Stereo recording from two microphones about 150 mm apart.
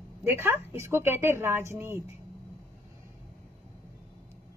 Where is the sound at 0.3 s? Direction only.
15° right (ahead or behind).